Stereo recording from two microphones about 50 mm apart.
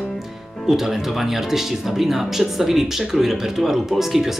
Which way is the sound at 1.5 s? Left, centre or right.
Centre.